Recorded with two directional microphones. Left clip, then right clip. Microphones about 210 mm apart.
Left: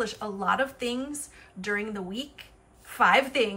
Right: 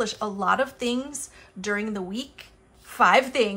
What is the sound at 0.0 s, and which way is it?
A woman's voice, 10° right (ahead or behind).